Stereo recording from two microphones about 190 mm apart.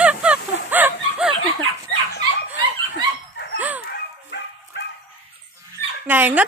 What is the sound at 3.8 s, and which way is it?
Bow-wow, 65° left (ahead or behind).